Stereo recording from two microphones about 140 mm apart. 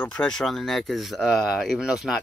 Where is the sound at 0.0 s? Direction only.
10° left (ahead or behind).